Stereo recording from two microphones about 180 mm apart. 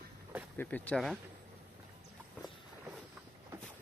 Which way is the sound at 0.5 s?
10° left (ahead or behind).